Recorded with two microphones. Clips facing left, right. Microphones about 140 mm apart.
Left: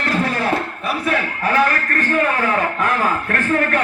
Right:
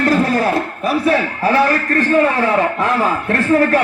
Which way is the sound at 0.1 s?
40° right (ahead or behind).